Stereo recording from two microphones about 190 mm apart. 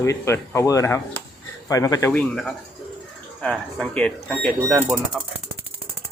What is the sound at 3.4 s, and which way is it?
Speech, 5° left (ahead or behind).